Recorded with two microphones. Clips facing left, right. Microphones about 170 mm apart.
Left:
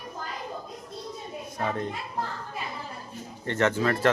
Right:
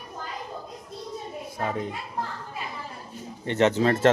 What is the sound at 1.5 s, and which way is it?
Speech, 5° right (ahead or behind).